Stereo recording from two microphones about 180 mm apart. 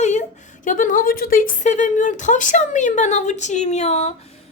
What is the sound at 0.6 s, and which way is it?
A woman's voice, 45° left (ahead or behind).